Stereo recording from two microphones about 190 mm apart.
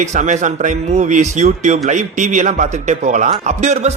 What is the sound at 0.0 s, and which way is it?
A man's voice, 40° right (ahead or behind).